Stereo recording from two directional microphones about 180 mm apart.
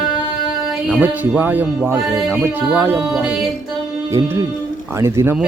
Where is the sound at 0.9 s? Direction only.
5° right (ahead or behind).